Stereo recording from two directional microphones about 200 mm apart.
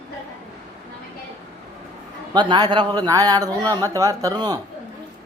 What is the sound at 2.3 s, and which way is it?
A man's voice, 20° right (ahead or behind).